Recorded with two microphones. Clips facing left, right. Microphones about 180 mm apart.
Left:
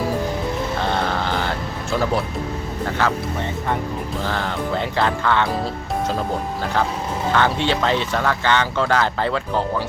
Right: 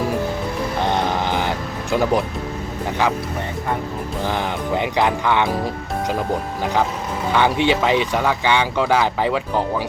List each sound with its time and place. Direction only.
0.8 s music: 15° right (ahead or behind)
3.0 s speech: 15° right (ahead or behind)
4.2 s speech: 15° right (ahead or behind)
7.3 s speech: 15° right (ahead or behind)